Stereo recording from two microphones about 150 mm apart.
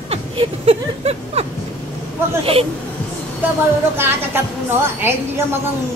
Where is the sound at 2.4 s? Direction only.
40° right (ahead or behind).